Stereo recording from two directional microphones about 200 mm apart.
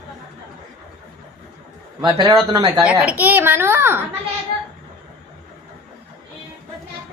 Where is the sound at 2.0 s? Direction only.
25° right (ahead or behind).